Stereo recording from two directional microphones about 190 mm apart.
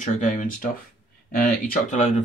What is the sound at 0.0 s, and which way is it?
Speech, 40° left (ahead or behind).